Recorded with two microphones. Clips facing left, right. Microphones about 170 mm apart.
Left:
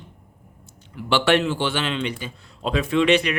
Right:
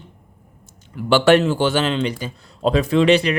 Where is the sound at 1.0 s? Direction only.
45° right (ahead or behind).